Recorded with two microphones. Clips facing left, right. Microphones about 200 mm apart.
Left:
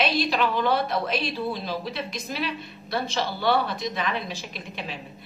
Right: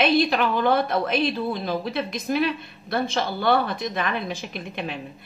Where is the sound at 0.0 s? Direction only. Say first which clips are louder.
Right 4 dB; 50° right (ahead or behind).